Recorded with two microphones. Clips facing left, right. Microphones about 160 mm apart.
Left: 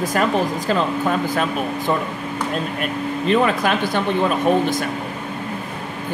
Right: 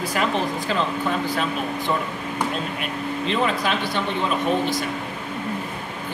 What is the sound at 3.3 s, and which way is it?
Speech, 50° left (ahead or behind).